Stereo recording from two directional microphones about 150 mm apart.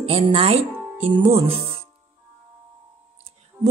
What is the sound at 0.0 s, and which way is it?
Speech, 40° right (ahead or behind).